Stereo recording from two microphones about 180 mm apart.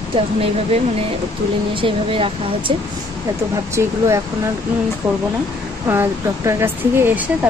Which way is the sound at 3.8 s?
15° right (ahead or behind).